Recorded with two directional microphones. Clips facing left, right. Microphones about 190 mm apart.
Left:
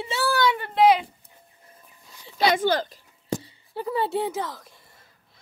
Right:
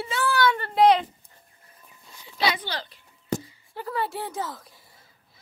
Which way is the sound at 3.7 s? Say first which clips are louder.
Left 4 dB; 20° left (ahead or behind).